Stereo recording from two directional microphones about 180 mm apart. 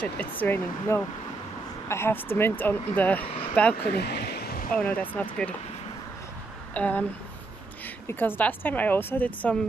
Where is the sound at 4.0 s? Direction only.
65° left (ahead or behind).